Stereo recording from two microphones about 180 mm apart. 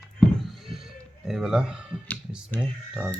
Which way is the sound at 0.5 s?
Centre (ahead or behind).